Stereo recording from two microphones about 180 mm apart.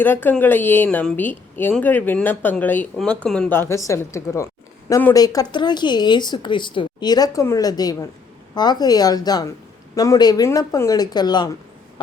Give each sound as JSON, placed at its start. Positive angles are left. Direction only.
{"t": 0.0, "sound": "a woman's voice", "side_deg": 10}